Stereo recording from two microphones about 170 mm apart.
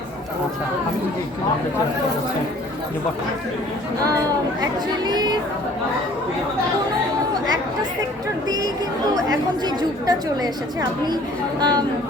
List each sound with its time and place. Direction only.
4.6 s speech: 25° right (ahead or behind)
8.4 s speech: 20° right (ahead or behind)